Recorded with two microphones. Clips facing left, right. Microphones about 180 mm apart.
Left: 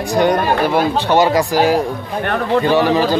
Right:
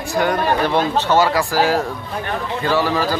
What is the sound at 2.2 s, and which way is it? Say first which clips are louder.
Speech: left 9 dB; 65° left (ahead or behind).